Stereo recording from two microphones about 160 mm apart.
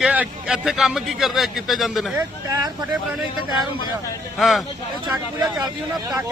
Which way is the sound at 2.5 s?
20° right (ahead or behind).